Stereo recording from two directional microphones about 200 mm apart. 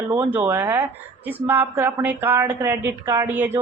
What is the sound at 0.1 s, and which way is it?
Speech, 10° right (ahead or behind).